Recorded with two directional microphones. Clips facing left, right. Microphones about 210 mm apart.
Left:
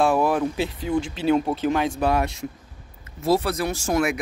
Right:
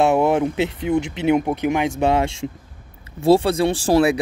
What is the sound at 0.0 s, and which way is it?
Speech, 25° right (ahead or behind).